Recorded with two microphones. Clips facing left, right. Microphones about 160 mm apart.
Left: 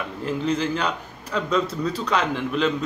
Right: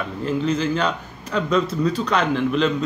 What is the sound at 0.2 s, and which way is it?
A man's voice, 10° left (ahead or behind).